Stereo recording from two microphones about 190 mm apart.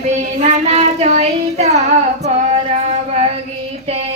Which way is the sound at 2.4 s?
35° right (ahead or behind).